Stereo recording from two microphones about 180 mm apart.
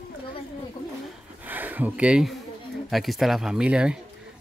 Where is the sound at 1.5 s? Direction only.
10° right (ahead or behind).